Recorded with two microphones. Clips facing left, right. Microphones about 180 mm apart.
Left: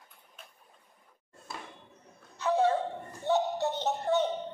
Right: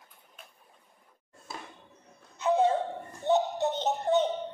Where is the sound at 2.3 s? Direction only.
20° right (ahead or behind).